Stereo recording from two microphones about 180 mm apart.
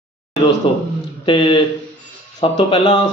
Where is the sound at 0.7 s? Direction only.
30° left (ahead or behind).